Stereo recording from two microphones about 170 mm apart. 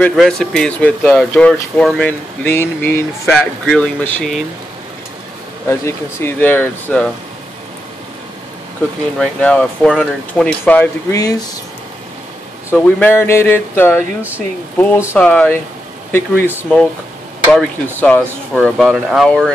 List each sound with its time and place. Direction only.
0.0 s speech: centre (ahead or behind)
5.7 s speech: 15° left (ahead or behind)
9.2 s speech: 5° left (ahead or behind)
11.1 s speech: 20° left (ahead or behind)
12.7 s speech: 10° left (ahead or behind)
17.5 s speech: 5° left (ahead or behind)